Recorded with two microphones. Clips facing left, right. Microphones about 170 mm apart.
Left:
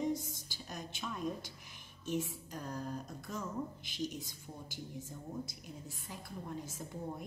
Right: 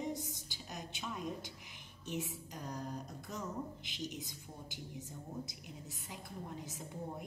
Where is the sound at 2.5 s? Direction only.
15° right (ahead or behind).